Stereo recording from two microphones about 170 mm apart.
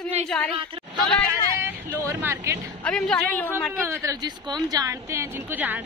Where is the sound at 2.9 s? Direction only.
5° left (ahead or behind).